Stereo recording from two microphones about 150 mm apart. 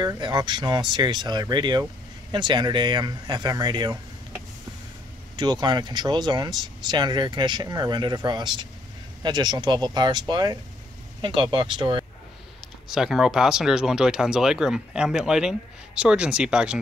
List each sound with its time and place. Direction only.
0.0 s speech: 30° right (ahead or behind)
5.3 s speech: 30° right (ahead or behind)
12.8 s speech: centre (ahead or behind)